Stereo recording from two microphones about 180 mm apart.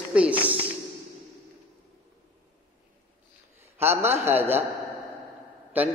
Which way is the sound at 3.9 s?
35° right (ahead or behind).